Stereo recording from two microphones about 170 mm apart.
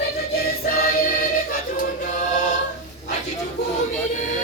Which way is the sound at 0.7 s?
55° left (ahead or behind).